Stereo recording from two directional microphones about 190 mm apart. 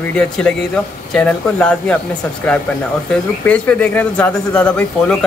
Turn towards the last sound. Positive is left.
turn(degrees=5)  # may be behind; listen again after turning